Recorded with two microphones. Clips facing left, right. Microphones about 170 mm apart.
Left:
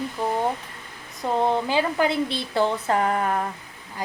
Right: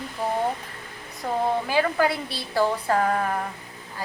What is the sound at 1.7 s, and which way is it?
A woman's voice, 20° left (ahead or behind).